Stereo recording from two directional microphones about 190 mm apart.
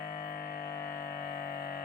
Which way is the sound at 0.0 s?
50° left (ahead or behind).